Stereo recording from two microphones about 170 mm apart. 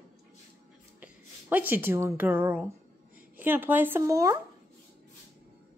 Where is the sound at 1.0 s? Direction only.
10° right (ahead or behind).